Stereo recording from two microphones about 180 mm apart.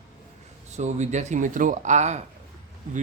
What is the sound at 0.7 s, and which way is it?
A man's voice, 40° right (ahead or behind).